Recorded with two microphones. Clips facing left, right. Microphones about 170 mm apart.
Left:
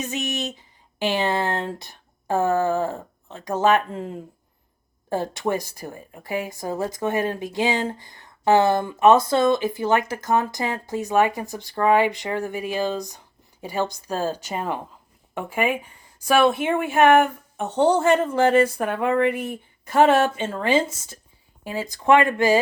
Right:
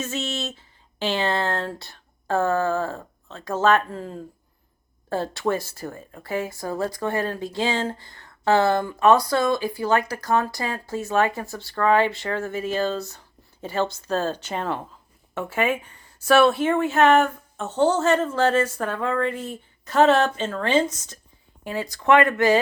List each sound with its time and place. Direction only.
0.0 s speech: 15° left (ahead or behind)